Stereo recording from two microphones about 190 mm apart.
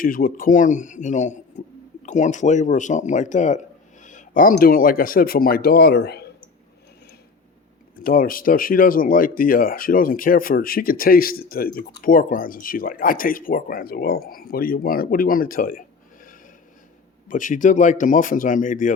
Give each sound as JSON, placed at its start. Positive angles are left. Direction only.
{"t": 0.0, "sound": "a man's voice", "side_deg": 45}
{"t": 8.0, "sound": "speech", "side_deg": 50}
{"t": 17.2, "sound": "speech", "side_deg": 45}